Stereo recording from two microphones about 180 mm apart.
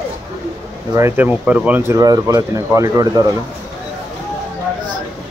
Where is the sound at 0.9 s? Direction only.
15° right (ahead or behind).